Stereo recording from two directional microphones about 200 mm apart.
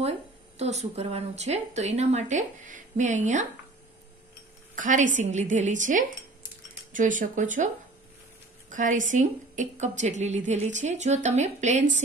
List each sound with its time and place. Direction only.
0.6 s a woman's voice: 35° right (ahead or behind)
4.7 s a woman's voice: 40° right (ahead or behind)